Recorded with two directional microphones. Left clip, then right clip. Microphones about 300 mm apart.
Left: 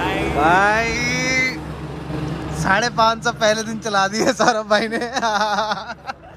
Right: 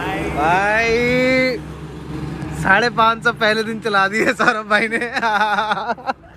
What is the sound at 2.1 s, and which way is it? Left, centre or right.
A man's voice, centre.